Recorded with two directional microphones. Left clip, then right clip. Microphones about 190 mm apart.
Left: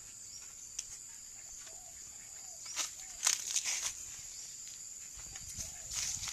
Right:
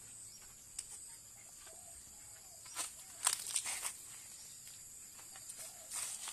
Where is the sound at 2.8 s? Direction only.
5° right (ahead or behind).